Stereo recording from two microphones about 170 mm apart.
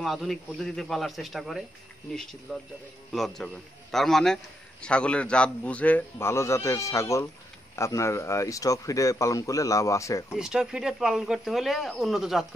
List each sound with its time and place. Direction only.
0.0 s a man's voice: centre (ahead or behind); by 10.2 s 20° left (ahead or behind)
10.3 s speech: 5° right (ahead or behind)